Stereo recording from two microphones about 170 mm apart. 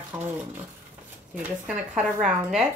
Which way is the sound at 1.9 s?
5° right (ahead or behind).